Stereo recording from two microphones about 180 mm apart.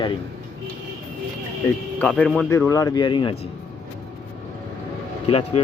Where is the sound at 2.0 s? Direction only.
5° left (ahead or behind); by 3.4 s 25° left (ahead or behind).